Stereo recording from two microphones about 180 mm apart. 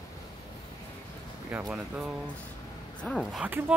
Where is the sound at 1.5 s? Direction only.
5° right (ahead or behind).